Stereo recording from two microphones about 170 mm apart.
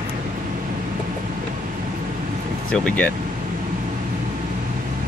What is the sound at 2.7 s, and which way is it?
Speech, 5° left (ahead or behind).